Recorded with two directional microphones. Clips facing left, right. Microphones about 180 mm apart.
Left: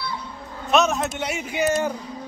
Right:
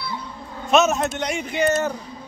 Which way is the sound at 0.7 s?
Centre (ahead or behind).